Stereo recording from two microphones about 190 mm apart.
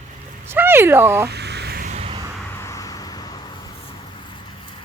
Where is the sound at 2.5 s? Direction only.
15° left (ahead or behind).